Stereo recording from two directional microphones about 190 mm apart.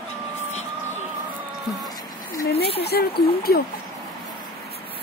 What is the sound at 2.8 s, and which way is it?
Speech, 55° left (ahead or behind).